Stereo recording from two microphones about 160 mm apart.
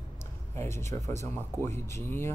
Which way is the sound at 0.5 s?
15° left (ahead or behind).